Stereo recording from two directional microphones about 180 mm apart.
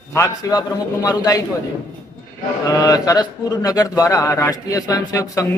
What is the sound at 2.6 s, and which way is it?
A man's voice, 20° left (ahead or behind).